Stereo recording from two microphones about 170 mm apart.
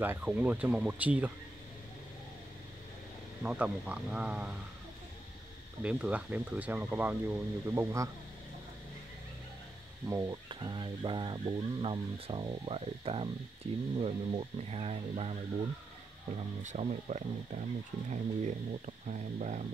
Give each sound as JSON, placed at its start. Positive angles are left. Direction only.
{"t": 0.0, "sound": "speech", "side_deg": -10}
{"t": 3.4, "sound": "speech", "side_deg": -5}
{"t": 5.8, "sound": "speech", "side_deg": -5}
{"t": 10.0, "sound": "speech", "side_deg": -15}
{"t": 10.5, "sound": "speech", "side_deg": -25}
{"t": 16.6, "sound": "speech", "side_deg": -40}